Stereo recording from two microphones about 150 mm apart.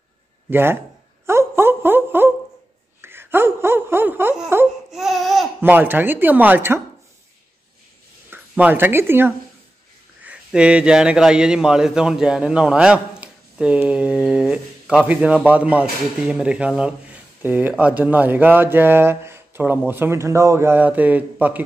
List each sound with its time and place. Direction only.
0.5 s a man's voice: 15° right (ahead or behind)
1.2 s a sound: 15° right (ahead or behind)
3.0 s wail: 15° right (ahead or behind)
4.9 s laughter: centre (ahead or behind)
5.6 s a man's voice: 15° right (ahead or behind)
8.3 s a man's voice: 10° right (ahead or behind)